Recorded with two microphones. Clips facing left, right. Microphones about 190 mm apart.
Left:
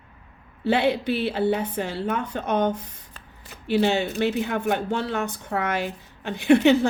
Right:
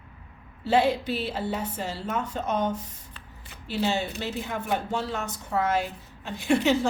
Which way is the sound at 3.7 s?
65° left (ahead or behind).